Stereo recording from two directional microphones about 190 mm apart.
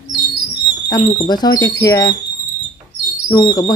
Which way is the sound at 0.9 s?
20° left (ahead or behind).